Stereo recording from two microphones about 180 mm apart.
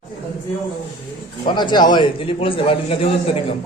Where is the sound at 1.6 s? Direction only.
25° left (ahead or behind).